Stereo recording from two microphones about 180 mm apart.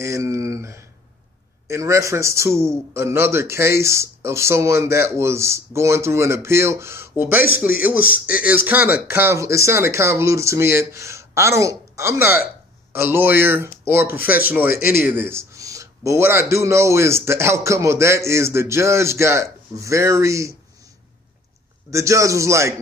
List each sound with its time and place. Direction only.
0.0 s a sound: 15° right (ahead or behind)
1.7 s a man's voice: 15° right (ahead or behind)
7.9 s speech: 55° left (ahead or behind)
8.4 s a man's voice: 10° right (ahead or behind)
14.7 s speech: 55° left (ahead or behind)
15.0 s a man's voice: 10° right (ahead or behind)
21.9 s a man's voice: 15° right (ahead or behind)